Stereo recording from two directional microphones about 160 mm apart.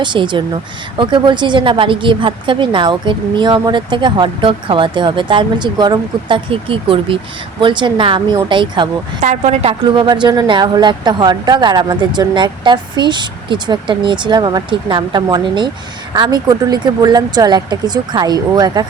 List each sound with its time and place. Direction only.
0.0 s a woman's voice: 30° right (ahead or behind)
9.2 s a woman's voice: 45° right (ahead or behind); by 18.9 s 25° right (ahead or behind)